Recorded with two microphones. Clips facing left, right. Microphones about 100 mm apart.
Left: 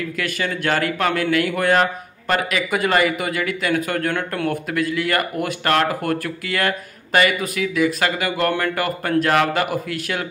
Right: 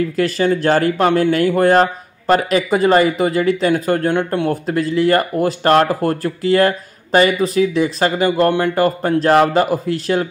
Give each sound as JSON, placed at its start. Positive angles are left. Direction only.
{"t": 0.2, "sound": "speech", "side_deg": -30}